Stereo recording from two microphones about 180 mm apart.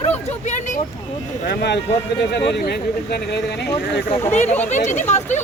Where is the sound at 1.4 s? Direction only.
65° left (ahead or behind).